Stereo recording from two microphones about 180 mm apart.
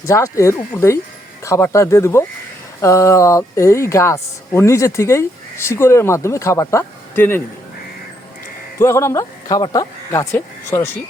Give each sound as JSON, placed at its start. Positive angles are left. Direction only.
{"t": 0.0, "sound": "speech", "side_deg": 15}
{"t": 8.8, "sound": "speech", "side_deg": 15}